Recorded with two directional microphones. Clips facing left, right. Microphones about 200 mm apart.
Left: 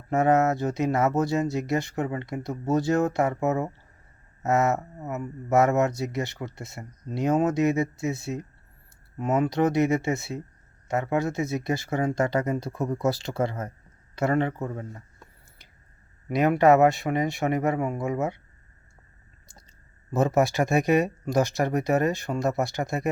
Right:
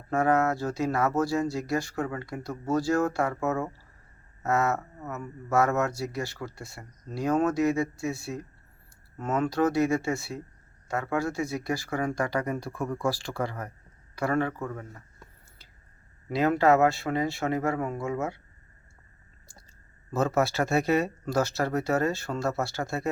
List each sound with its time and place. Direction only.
0.1 s speech: 20° left (ahead or behind)
16.3 s speech: 20° left (ahead or behind)
20.1 s speech: 15° left (ahead or behind)